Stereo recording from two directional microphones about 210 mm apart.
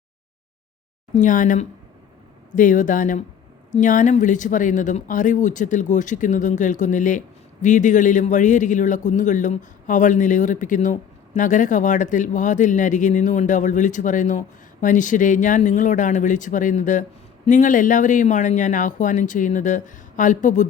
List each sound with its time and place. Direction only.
1.1 s speech: 40° left (ahead or behind)